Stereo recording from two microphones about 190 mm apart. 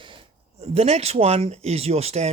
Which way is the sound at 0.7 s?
35° right (ahead or behind).